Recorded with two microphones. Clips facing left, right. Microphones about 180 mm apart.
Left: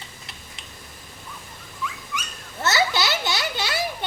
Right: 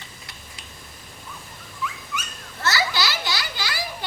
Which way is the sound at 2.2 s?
20° left (ahead or behind).